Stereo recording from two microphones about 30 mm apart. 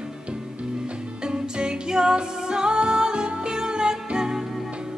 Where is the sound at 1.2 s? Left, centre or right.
Right.